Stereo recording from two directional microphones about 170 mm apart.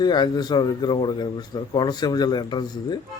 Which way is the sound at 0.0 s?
25° left (ahead or behind).